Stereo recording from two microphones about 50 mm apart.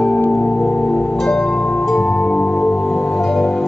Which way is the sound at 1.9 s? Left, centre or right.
Centre.